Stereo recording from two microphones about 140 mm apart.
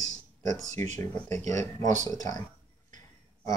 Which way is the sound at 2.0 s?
25° left (ahead or behind).